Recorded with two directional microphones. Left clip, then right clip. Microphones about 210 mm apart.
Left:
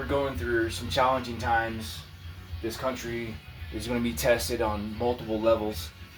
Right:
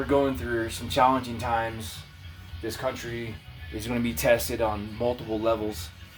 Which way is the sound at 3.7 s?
40° right (ahead or behind).